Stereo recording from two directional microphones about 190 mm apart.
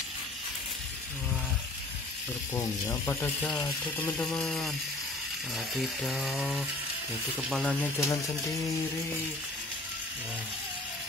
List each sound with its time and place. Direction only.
2.5 s speech: 15° left (ahead or behind)
5.8 s speech: centre (ahead or behind)